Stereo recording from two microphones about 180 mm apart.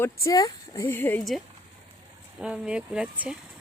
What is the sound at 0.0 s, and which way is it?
Speech, 15° left (ahead or behind).